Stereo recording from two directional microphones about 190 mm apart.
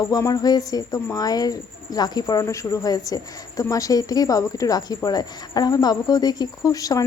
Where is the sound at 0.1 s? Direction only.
20° left (ahead or behind).